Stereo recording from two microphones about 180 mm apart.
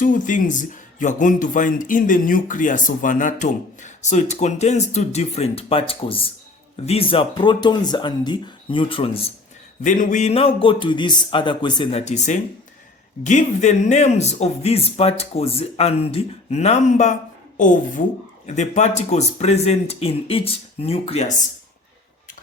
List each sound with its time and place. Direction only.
0.0 s speech: 45° left (ahead or behind); by 9.3 s 30° left (ahead or behind)
9.8 s speech: 45° left (ahead or behind)